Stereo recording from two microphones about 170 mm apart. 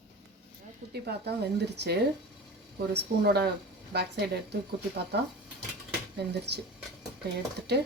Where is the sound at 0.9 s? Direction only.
70° right (ahead or behind).